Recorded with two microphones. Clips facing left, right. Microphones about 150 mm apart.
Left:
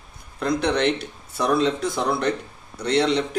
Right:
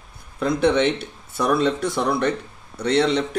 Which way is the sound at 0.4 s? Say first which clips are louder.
Right 3 dB; 5° right (ahead or behind).